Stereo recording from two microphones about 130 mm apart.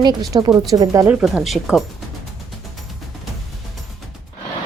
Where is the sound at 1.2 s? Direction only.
Centre (ahead or behind).